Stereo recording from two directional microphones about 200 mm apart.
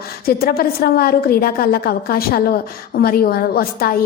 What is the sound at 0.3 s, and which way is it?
A woman's voice, 50° left (ahead or behind).